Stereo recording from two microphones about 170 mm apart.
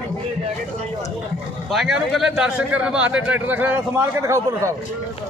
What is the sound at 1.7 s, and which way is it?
Speech, centre (ahead or behind).